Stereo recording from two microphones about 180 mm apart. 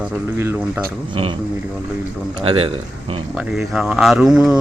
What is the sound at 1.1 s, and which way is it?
Speech, 30° right (ahead or behind).